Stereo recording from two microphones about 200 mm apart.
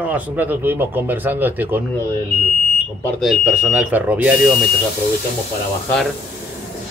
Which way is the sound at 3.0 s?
5° left (ahead or behind).